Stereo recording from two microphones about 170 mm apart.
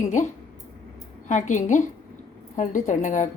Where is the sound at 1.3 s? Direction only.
45° left (ahead or behind).